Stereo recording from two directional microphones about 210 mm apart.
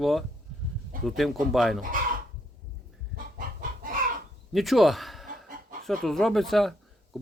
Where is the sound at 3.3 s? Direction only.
40° right (ahead or behind).